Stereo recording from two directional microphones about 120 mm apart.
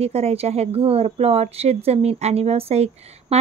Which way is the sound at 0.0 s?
60° right (ahead or behind).